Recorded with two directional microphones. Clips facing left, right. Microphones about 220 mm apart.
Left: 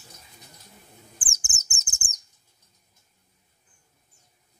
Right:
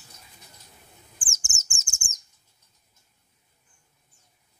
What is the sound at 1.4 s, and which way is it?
Bird, 15° left (ahead or behind).